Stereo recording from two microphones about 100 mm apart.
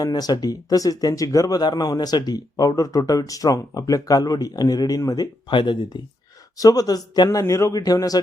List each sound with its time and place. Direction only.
0.0 s speech: 40° left (ahead or behind)
6.6 s speech: 40° left (ahead or behind)